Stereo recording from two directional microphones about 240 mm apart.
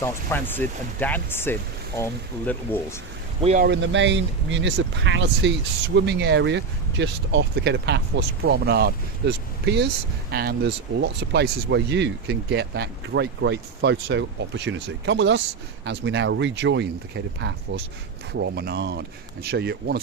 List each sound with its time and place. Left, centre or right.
0.0 s speech: centre
3.4 s speech: right
3.7 s speech: right